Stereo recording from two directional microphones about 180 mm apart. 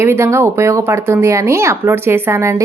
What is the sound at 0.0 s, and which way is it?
Speech, 15° right (ahead or behind).